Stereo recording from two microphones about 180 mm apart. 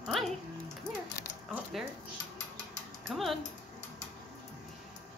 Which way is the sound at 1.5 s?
Centre (ahead or behind).